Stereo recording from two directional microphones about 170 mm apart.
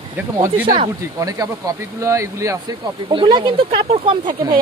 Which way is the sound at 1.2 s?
20° right (ahead or behind).